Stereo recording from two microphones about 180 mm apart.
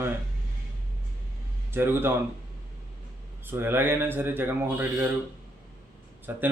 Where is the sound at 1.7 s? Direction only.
10° right (ahead or behind).